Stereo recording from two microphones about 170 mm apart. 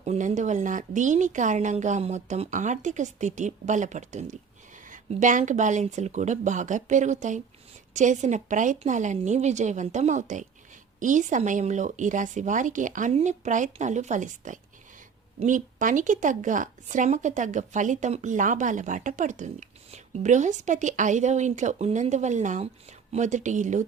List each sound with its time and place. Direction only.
0.0 s a woman's voice: 45° right (ahead or behind)